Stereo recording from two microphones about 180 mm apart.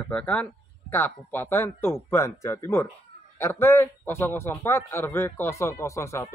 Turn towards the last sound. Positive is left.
turn(degrees=15)  # may be behind; listen again after turning